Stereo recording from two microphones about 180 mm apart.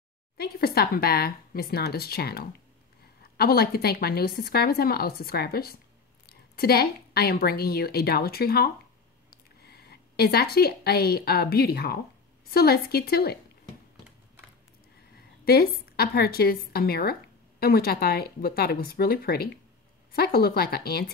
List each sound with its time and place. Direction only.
0.4 s a woman's voice: 60° left (ahead or behind)
15.4 s a woman's voice: 55° left (ahead or behind)